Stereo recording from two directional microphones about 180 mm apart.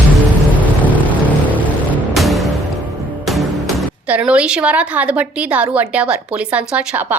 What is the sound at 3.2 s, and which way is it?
A woman's voice, centre (ahead or behind).